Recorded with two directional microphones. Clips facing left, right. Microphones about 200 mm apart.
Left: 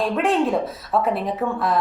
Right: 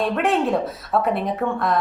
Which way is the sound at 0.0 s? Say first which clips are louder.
Even; centre (ahead or behind).